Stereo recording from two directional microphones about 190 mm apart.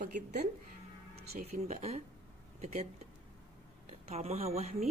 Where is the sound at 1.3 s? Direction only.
35° right (ahead or behind).